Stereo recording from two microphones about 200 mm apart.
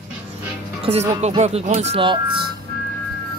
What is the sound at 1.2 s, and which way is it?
Speech, 30° right (ahead or behind).